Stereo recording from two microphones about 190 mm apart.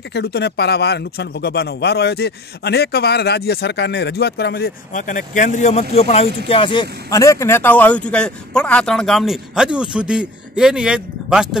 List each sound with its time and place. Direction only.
0.1 s a man's voice: 60° left (ahead or behind); by 11.4 s 5° right (ahead or behind)